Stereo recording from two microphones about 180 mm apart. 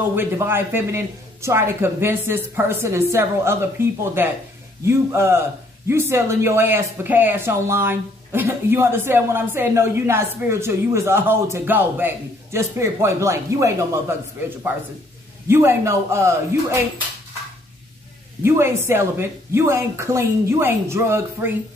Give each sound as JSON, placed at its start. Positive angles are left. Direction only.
{"t": 0.1, "sound": "speech", "side_deg": -15}
{"t": 15.4, "sound": "speech", "side_deg": -15}
{"t": 18.4, "sound": "speech", "side_deg": -15}